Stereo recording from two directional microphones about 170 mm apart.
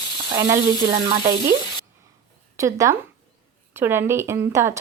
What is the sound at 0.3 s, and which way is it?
Speech, 15° right (ahead or behind).